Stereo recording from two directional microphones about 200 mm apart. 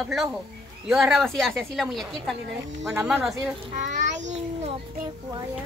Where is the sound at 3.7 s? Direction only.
40° right (ahead or behind).